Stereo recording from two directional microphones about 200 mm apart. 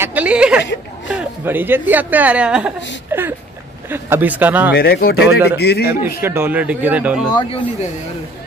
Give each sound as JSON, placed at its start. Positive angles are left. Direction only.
{"t": 0.0, "sound": "speech", "side_deg": -5}
{"t": 0.6, "sound": "a sound", "side_deg": 65}
{"t": 1.1, "sound": "a woman's voice", "side_deg": -10}
{"t": 3.1, "sound": "a sound", "side_deg": -10}
{"t": 3.9, "sound": "speech", "side_deg": -10}
{"t": 4.7, "sound": "speech", "side_deg": 50}
{"t": 5.2, "sound": "speech", "side_deg": -10}
{"t": 5.6, "sound": "a man's voice", "side_deg": 55}
{"t": 6.0, "sound": "speech", "side_deg": -10}